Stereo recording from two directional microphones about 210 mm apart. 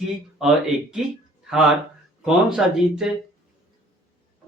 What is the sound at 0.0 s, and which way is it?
Speech, centre (ahead or behind).